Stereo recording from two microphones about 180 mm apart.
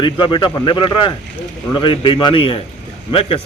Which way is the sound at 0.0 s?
25° left (ahead or behind).